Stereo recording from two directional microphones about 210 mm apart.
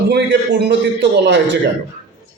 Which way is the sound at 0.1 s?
55° right (ahead or behind).